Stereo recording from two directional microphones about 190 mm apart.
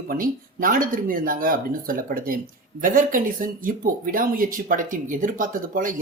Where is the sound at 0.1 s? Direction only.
45° right (ahead or behind).